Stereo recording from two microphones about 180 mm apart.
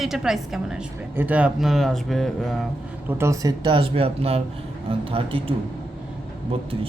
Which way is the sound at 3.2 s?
20° right (ahead or behind).